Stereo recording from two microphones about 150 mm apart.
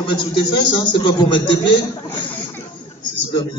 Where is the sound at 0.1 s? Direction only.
30° left (ahead or behind).